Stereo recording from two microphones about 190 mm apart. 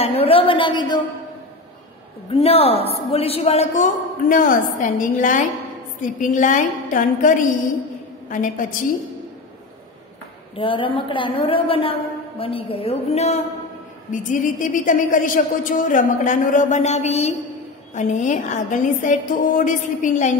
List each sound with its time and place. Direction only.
0.0 s a sound: 30° left (ahead or behind)
2.3 s a man's voice: 30° left (ahead or behind)
10.5 s a woman's voice: 25° left (ahead or behind)